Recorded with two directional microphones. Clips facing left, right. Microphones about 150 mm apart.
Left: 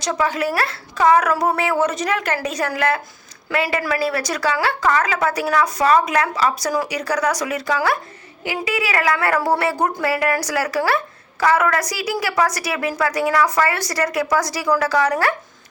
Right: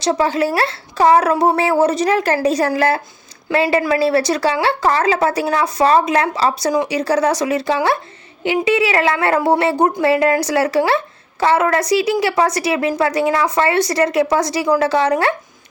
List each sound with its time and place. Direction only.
0.0 s a woman's voice: 30° right (ahead or behind)